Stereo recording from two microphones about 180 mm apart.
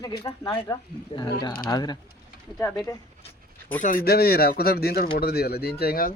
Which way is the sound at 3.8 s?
50° left (ahead or behind).